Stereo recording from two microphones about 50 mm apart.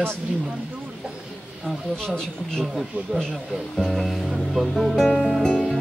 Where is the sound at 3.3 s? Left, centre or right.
Centre.